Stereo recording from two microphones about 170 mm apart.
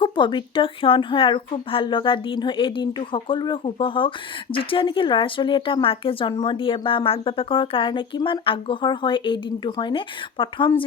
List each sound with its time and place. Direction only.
0.0 s speech: 25° left (ahead or behind)